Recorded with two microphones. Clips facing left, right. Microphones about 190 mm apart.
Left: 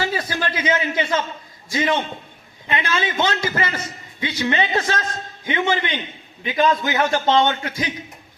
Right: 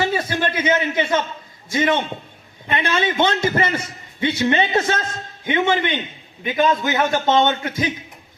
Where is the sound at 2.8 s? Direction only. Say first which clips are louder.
Right 4 dB; 25° right (ahead or behind).